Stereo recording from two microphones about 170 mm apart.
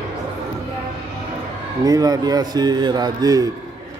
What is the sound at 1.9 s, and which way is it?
A man's voice, 20° right (ahead or behind).